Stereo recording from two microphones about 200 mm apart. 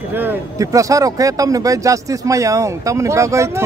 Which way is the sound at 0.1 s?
10° right (ahead or behind).